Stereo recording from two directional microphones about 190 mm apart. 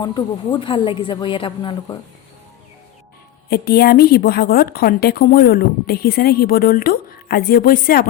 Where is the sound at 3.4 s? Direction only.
55° left (ahead or behind).